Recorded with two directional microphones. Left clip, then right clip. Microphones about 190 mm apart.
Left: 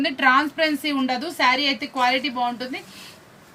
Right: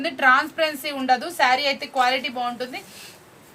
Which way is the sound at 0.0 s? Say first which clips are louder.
Even; 40° right (ahead or behind).